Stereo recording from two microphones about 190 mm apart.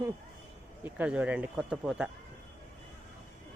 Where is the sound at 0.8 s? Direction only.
5° right (ahead or behind).